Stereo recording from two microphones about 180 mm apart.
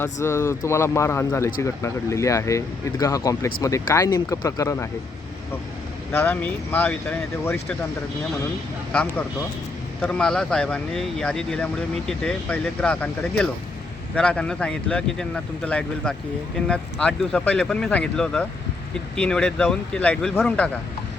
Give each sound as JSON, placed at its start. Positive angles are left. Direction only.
{"t": 0.0, "sound": "speech", "side_deg": 15}
{"t": 6.1, "sound": "speech", "side_deg": 10}
{"t": 8.9, "sound": "speech", "side_deg": 5}